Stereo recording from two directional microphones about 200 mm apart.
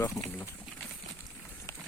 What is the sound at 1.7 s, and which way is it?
Run, 15° left (ahead or behind).